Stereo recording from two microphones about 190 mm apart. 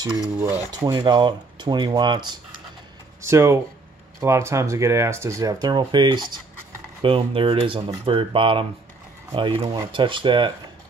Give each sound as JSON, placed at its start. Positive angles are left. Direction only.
{"t": 0.4, "sound": "speech", "side_deg": -20}